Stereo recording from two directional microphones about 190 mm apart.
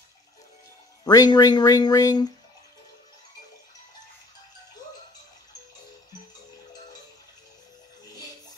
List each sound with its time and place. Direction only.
1.0 s speech: 20° left (ahead or behind)